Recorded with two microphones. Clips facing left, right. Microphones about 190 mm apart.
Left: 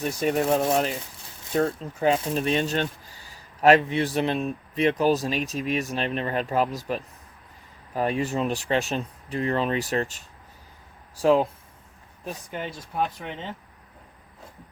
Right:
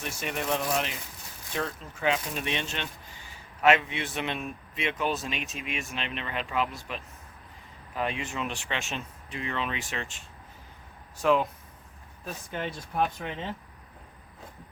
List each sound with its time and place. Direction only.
0.0 s a man's voice: 35° left (ahead or behind)
12.2 s speech: 10° left (ahead or behind)